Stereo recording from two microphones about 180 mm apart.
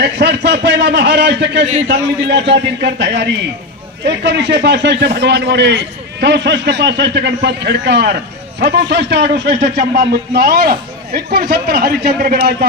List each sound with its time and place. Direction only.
0.0 s a man's voice: 70° right (ahead or behind)